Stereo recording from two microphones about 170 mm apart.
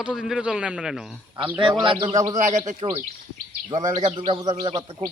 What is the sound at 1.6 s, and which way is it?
Speech, 30° right (ahead or behind).